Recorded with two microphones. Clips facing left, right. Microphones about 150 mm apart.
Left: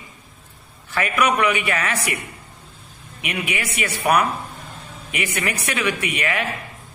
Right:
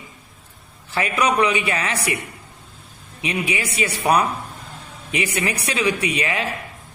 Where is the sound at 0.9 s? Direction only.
30° right (ahead or behind).